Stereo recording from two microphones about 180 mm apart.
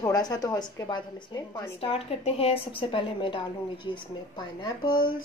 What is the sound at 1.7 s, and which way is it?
A woman's voice, 30° left (ahead or behind).